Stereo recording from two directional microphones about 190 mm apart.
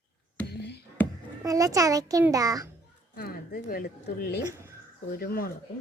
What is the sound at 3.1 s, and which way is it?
Speech, 50° left (ahead or behind).